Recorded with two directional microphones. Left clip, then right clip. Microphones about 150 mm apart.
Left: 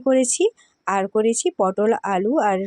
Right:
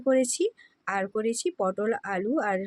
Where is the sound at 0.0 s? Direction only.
40° left (ahead or behind).